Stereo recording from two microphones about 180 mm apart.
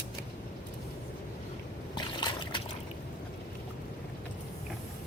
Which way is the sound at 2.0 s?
25° left (ahead or behind).